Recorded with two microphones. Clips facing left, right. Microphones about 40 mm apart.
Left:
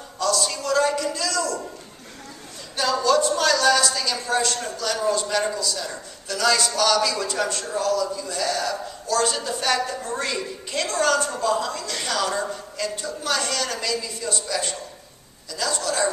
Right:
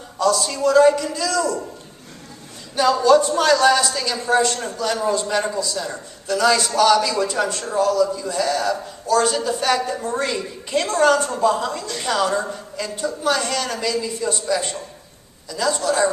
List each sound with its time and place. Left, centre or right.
0.2 s a man's voice: centre
2.7 s a man's voice: centre